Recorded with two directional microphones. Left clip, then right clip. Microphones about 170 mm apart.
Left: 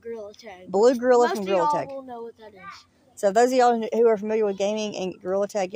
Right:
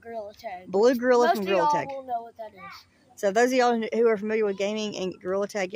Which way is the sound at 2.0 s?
20° right (ahead or behind).